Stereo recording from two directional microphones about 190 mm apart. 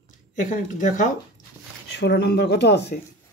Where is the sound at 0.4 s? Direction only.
45° left (ahead or behind).